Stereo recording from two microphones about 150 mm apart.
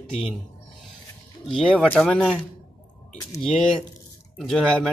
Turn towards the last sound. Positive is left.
turn(degrees=5)  # may be behind; listen again after turning